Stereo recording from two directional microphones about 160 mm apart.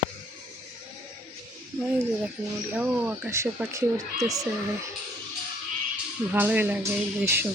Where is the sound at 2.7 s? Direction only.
10° right (ahead or behind).